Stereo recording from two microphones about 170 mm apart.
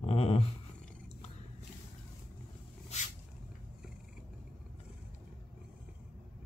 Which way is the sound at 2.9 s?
40° left (ahead or behind).